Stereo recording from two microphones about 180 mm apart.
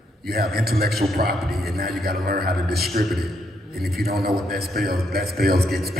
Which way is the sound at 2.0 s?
60° right (ahead or behind).